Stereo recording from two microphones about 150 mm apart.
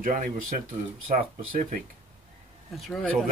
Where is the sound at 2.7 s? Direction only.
Centre (ahead or behind).